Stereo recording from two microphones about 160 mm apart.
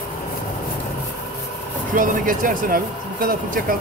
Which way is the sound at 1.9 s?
60° right (ahead or behind).